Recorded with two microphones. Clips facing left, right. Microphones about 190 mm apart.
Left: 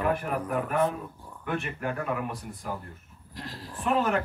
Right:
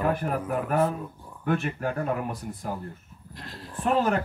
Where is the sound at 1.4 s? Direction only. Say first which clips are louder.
Right 5 dB; 35° right (ahead or behind).